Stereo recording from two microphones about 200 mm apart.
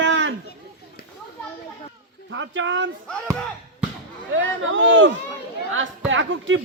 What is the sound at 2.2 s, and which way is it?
Speech, 65° right (ahead or behind).